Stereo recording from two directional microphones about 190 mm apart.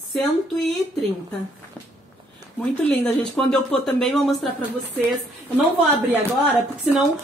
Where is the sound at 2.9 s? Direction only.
5° left (ahead or behind).